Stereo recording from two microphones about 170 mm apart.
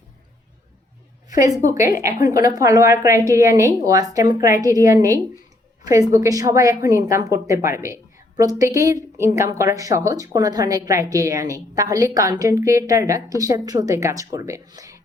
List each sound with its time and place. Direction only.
1.3 s a woman's voice: 20° right (ahead or behind)